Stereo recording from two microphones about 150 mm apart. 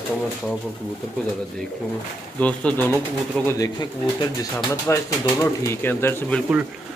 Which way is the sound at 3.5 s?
25° left (ahead or behind).